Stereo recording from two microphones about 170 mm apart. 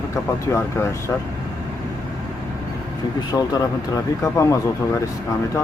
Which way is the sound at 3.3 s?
20° left (ahead or behind).